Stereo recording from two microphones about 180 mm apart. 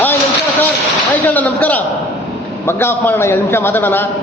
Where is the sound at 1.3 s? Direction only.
10° left (ahead or behind).